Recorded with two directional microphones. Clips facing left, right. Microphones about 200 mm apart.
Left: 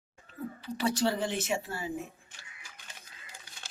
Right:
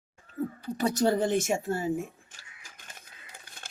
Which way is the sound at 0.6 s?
45° right (ahead or behind).